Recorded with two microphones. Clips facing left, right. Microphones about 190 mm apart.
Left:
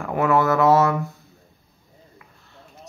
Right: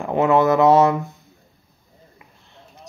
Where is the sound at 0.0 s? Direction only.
20° right (ahead or behind).